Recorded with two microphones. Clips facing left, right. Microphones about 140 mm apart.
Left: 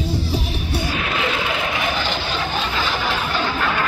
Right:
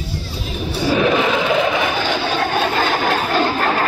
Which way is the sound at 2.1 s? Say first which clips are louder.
Right 5 dB; 60° right (ahead or behind).